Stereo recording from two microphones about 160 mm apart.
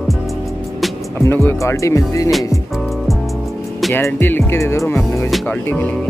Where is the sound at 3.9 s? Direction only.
15° left (ahead or behind).